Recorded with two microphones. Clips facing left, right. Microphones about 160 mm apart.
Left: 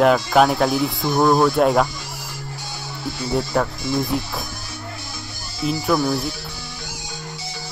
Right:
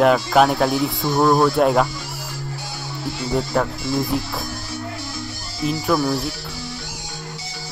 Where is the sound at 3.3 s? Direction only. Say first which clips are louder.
Even; centre (ahead or behind).